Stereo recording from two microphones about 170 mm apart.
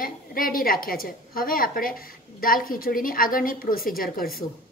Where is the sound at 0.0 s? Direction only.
55° left (ahead or behind).